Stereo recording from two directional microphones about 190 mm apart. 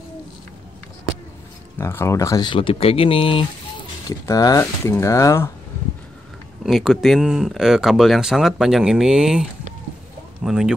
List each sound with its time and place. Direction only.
1.8 s speech: 15° left (ahead or behind)
6.6 s speech: centre (ahead or behind)